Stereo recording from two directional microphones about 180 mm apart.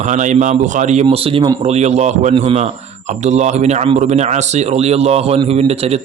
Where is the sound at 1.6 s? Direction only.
40° right (ahead or behind).